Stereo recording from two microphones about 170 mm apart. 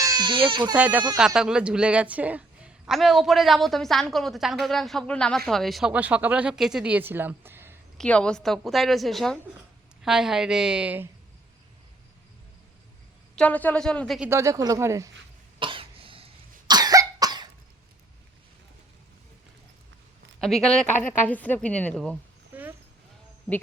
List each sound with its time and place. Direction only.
0.0 s speech: 25° right (ahead or behind)
0.7 s speech: 10° right (ahead or behind)
7.9 s speech: 5° left (ahead or behind); by 11.1 s 10° right (ahead or behind)
13.3 s a woman's voice: 10° left (ahead or behind)
14.2 s speech: 15° right (ahead or behind)
15.5 s cough: 30° right (ahead or behind)
20.4 s a woman's voice: 5° left (ahead or behind)
22.5 s a sound: 10° right (ahead or behind)